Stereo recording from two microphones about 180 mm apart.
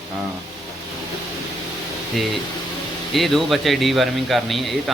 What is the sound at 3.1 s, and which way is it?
Speech, centre (ahead or behind).